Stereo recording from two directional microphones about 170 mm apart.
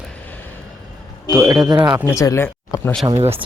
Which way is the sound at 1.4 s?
25° right (ahead or behind).